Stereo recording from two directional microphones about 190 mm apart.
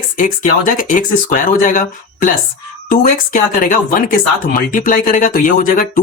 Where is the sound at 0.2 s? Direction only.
45° left (ahead or behind).